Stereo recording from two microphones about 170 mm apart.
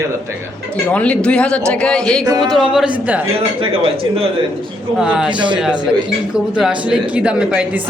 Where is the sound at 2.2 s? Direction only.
20° right (ahead or behind).